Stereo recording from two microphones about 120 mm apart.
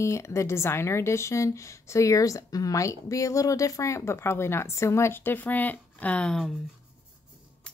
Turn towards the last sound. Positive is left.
turn(degrees=10)  # may be behind; listen again after turning